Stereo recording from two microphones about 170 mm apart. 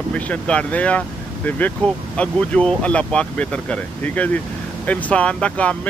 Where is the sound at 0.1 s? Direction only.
5° left (ahead or behind).